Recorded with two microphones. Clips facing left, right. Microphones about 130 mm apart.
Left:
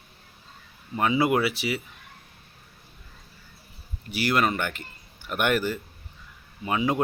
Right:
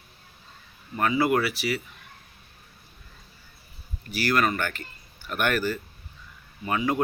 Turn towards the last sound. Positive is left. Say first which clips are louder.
# left 1 dB
turn(degrees=20)  # may be behind; listen again after turning